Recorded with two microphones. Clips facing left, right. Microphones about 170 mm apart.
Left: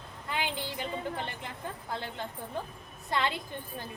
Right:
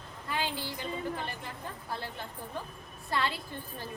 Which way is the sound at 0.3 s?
20° left (ahead or behind).